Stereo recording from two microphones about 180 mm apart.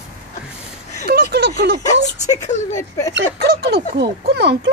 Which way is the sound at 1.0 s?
65° right (ahead or behind).